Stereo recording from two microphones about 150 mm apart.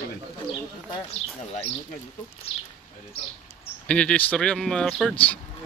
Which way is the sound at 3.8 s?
5° left (ahead or behind).